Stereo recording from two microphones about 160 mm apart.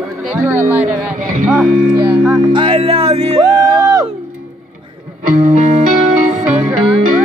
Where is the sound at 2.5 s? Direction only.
35° right (ahead or behind).